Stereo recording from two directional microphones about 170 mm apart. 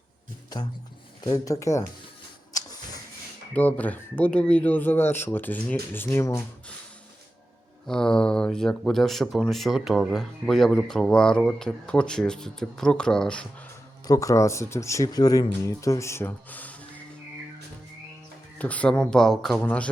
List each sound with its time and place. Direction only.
1.2 s speech: 20° left (ahead or behind)
2.5 s a sound: 20° left (ahead or behind)
3.5 s speech: 10° left (ahead or behind)
7.9 s speech: 5° left (ahead or behind)
14.1 s speech: 20° left (ahead or behind)
18.6 s speech: 10° left (ahead or behind)